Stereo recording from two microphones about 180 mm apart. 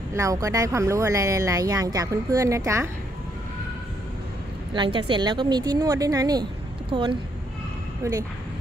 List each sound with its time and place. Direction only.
0.1 s speech: 15° right (ahead or behind)
4.7 s a woman's voice: 25° right (ahead or behind)
8.0 s speech: 15° right (ahead or behind)